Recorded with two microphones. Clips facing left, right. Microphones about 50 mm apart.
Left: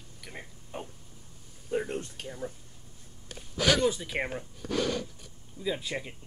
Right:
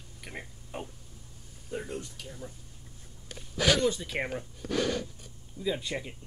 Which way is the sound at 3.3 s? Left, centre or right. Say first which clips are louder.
Even; centre.